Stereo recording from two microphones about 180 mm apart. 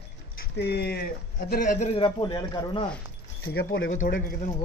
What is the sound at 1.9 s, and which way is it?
Speech, 25° left (ahead or behind).